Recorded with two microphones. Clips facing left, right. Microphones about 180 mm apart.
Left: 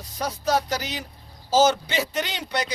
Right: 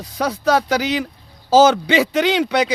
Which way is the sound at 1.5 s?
90° right.